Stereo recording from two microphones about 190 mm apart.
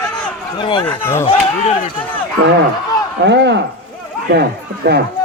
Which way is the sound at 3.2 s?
65° right (ahead or behind).